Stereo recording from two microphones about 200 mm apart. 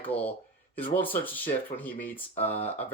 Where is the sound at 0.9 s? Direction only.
10° left (ahead or behind).